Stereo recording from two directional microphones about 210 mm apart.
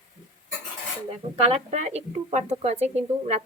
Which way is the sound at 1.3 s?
30° right (ahead or behind).